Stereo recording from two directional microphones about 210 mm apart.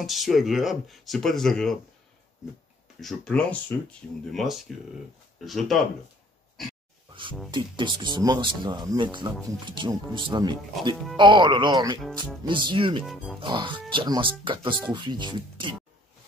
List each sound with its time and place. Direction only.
0.0 s speech: centre (ahead or behind)
3.0 s speech: 5° left (ahead or behind)
7.5 s speech: 20° right (ahead or behind)
13.0 s speech: centre (ahead or behind)
13.4 s speech: 25° right (ahead or behind)